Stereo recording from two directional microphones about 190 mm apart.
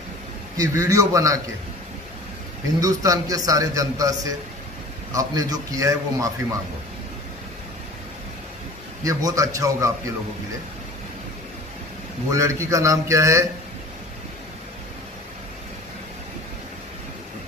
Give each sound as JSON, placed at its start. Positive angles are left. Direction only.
{"t": 0.6, "sound": "a man's voice", "side_deg": -15}
{"t": 2.8, "sound": "a man's voice", "side_deg": -20}
{"t": 9.0, "sound": "a man's voice", "side_deg": -15}
{"t": 12.3, "sound": "a man's voice", "side_deg": -15}